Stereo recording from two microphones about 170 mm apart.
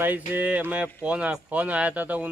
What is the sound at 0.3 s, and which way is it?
Speech, 10° right (ahead or behind).